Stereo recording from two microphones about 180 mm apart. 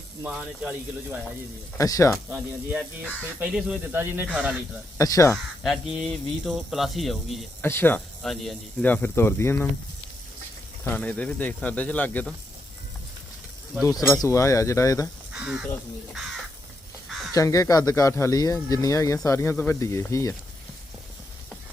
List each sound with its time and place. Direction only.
0.2 s speech: 5° right (ahead or behind)
1.8 s speech: 15° left (ahead or behind)
2.3 s speech: 5° right (ahead or behind)
4.9 s speech: 20° left (ahead or behind)
5.9 s speech: centre (ahead or behind)
7.6 s speech: 10° left (ahead or behind)
10.9 s speech: 5° left (ahead or behind)
13.8 s speech: 15° left (ahead or behind)
15.3 s speech: 5° right (ahead or behind)
17.3 s speech: 20° left (ahead or behind)